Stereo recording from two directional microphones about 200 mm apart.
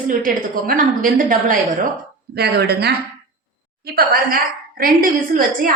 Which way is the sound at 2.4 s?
55° right (ahead or behind).